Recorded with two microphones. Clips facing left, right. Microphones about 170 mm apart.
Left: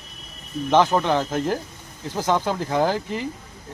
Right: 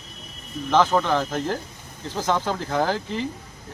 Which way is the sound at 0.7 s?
15° left (ahead or behind).